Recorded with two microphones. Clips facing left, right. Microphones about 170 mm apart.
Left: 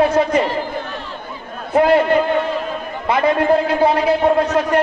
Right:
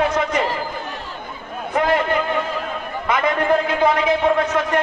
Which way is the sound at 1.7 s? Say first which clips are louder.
Left 6 dB; 30° left (ahead or behind).